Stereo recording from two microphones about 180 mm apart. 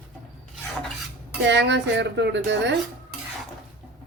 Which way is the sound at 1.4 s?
75° right (ahead or behind).